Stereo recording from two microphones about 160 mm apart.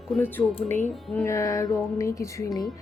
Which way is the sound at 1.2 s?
20° left (ahead or behind).